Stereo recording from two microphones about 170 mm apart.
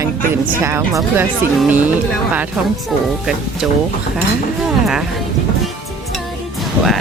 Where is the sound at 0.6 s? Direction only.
15° right (ahead or behind).